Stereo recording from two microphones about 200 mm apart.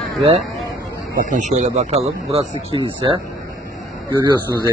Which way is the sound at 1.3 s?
40° right (ahead or behind).